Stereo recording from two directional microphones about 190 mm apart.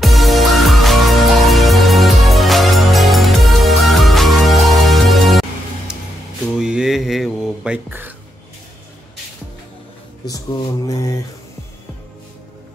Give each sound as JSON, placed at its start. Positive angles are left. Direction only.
{"t": 0.0, "sound": "music", "side_deg": 0}
{"t": 6.6, "sound": "mantra", "side_deg": -5}
{"t": 10.2, "sound": "speech", "side_deg": 20}